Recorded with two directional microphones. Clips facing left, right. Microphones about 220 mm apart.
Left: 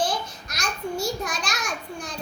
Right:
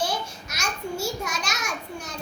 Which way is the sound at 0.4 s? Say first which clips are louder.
Left 1 dB; 10° right (ahead or behind).